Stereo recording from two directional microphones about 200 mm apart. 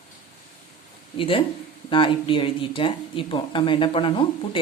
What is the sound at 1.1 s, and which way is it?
Speech, 25° left (ahead or behind).